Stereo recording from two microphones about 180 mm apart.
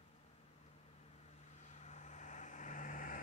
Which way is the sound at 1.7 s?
40° left (ahead or behind).